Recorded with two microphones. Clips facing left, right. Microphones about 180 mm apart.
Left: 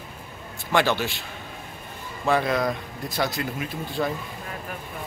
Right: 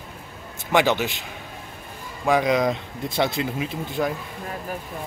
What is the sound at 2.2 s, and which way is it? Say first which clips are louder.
Speech: right 3 dB; 15° right (ahead or behind).